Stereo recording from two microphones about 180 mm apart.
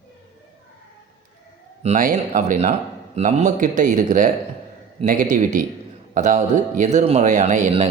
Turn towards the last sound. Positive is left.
turn(degrees=-40)  # may be behind; listen again after turning